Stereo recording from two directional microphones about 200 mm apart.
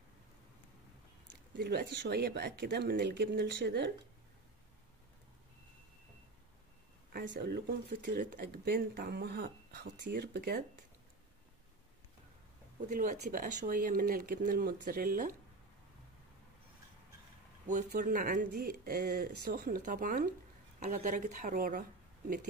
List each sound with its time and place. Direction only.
1.5 s speech: 55° right (ahead or behind)
7.1 s speech: 55° right (ahead or behind)
12.8 s a woman's voice: 40° right (ahead or behind)
17.6 s a woman's voice: 40° right (ahead or behind)